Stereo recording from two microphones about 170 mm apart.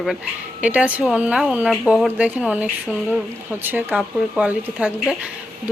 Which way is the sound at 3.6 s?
10° right (ahead or behind).